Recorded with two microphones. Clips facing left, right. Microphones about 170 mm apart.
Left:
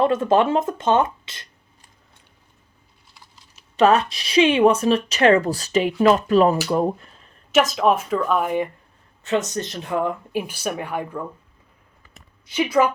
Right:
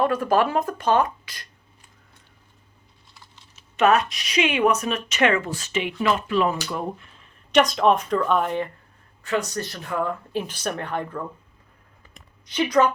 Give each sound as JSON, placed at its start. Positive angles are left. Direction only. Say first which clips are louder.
{"t": 0.0, "sound": "speech", "louder": "left 3 dB", "side_deg": 25}
{"t": 3.8, "sound": "speech", "louder": "left 3 dB", "side_deg": 30}
{"t": 7.5, "sound": "speech", "louder": "even", "side_deg": 5}
{"t": 9.2, "sound": "speech", "louder": "left 3 dB", "side_deg": 20}
{"t": 12.1, "sound": "a sound", "louder": "left 2 dB", "side_deg": 5}